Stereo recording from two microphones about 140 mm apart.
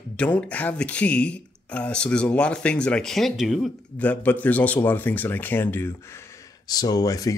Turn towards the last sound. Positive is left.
turn(degrees=25)  # may be behind; listen again after turning